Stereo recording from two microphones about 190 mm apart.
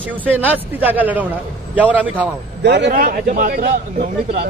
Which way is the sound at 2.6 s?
65° right (ahead or behind).